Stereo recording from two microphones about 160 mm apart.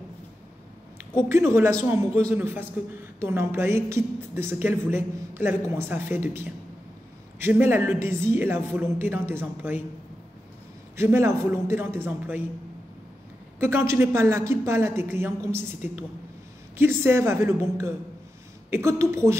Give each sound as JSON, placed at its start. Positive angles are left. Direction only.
{"t": 1.3, "sound": "a woman's voice", "side_deg": -15}
{"t": 11.0, "sound": "a woman's voice", "side_deg": -15}
{"t": 13.6, "sound": "a woman's voice", "side_deg": -15}